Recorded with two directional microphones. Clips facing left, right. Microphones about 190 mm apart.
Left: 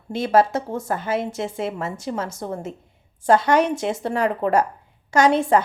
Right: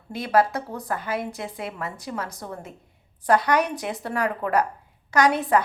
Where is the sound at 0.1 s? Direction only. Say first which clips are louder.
Left 3 dB; 25° left (ahead or behind).